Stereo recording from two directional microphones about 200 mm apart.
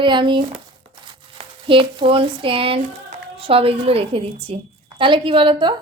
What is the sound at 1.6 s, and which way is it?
A woman's voice, 25° right (ahead or behind).